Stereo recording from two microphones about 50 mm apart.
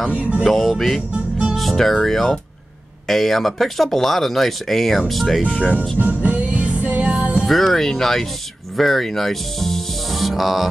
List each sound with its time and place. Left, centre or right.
0.1 s music: right
0.5 s speech: centre
5.9 s music: right
7.4 s speech: centre